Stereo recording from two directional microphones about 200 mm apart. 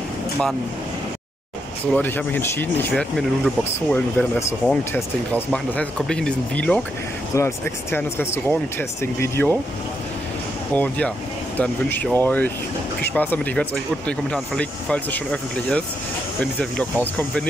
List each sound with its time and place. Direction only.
1.9 s speech: 10° left (ahead or behind)
10.7 s speech: 5° left (ahead or behind)
16.3 s speech: 5° left (ahead or behind)